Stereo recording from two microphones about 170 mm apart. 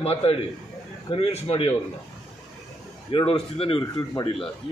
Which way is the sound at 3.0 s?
30° left (ahead or behind).